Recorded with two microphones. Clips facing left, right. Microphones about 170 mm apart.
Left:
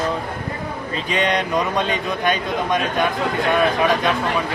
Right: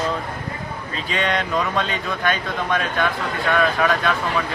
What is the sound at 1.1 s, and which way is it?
A man's voice, 20° left (ahead or behind).